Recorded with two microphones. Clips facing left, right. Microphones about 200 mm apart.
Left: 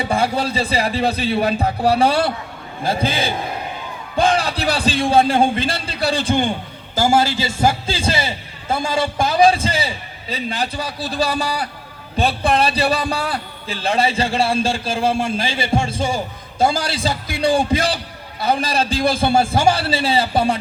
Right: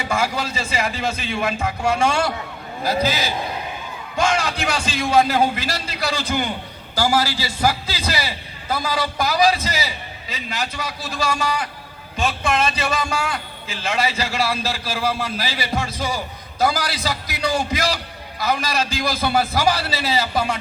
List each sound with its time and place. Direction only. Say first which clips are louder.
0.0 s a man's voice: left 4 dB; 30° left (ahead or behind)